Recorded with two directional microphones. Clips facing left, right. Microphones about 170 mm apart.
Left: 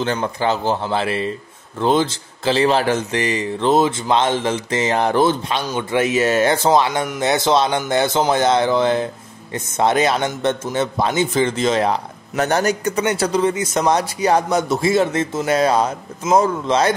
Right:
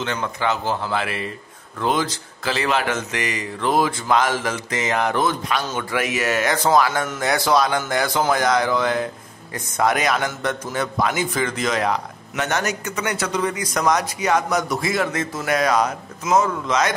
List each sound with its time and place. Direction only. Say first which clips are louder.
0.0 s speech: left 4 dB; 35° left (ahead or behind)